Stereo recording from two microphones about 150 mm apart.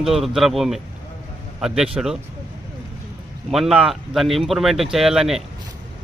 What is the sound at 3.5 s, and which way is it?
Speech, centre (ahead or behind).